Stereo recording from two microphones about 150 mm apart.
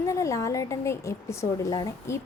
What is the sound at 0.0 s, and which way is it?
Speech, 20° left (ahead or behind).